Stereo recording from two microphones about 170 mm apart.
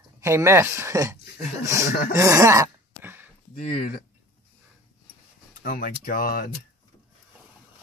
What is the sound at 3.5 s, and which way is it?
Speech, 55° left (ahead or behind).